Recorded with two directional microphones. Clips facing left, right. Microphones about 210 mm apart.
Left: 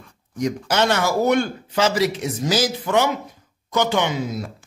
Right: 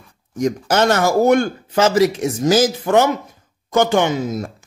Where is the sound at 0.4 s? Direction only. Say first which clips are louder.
Right 4 dB; 45° right (ahead or behind).